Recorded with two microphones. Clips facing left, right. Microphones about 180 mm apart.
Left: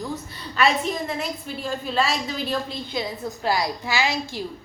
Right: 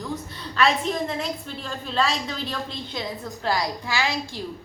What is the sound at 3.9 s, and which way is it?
Speech, 20° left (ahead or behind).